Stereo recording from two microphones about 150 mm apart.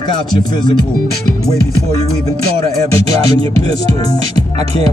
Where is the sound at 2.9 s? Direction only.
40° right (ahead or behind).